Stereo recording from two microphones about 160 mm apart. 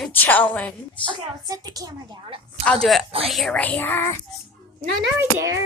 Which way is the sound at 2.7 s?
5° left (ahead or behind).